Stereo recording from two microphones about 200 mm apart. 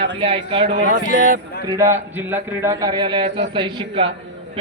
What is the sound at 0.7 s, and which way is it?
Speech, 40° right (ahead or behind).